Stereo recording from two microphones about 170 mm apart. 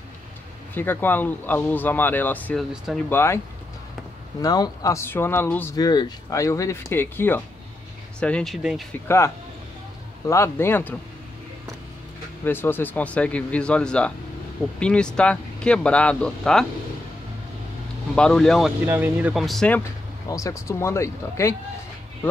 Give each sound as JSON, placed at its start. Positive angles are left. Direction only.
{"t": 0.7, "sound": "speech", "side_deg": 10}
{"t": 4.4, "sound": "speech", "side_deg": 20}
{"t": 5.8, "sound": "speech", "side_deg": 25}
{"t": 9.0, "sound": "speech", "side_deg": 15}
{"t": 12.4, "sound": "speech", "side_deg": 10}
{"t": 18.1, "sound": "speech", "side_deg": 5}
{"t": 18.9, "sound": "speech", "side_deg": -10}
{"t": 20.2, "sound": "speech", "side_deg": 20}